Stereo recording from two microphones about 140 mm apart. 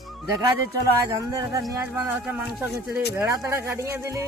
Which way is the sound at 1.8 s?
10° right (ahead or behind).